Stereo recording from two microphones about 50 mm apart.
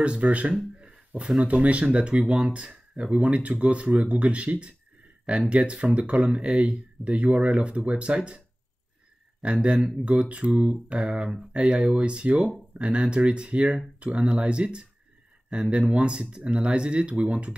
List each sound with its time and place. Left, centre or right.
0.0 s speech: right
9.4 s speech: right